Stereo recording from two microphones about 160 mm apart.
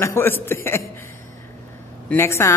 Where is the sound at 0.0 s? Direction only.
15° left (ahead or behind).